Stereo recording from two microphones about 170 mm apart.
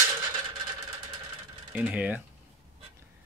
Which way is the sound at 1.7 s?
10° right (ahead or behind).